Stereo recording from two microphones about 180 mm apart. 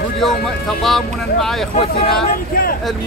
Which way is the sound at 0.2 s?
Centre (ahead or behind).